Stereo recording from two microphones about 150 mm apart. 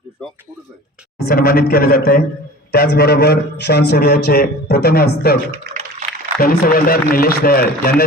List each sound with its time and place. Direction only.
1.2 s a man's voice: 90° left
5.7 s a sound: 90° right
6.4 s a man's voice: 75° left (ahead or behind)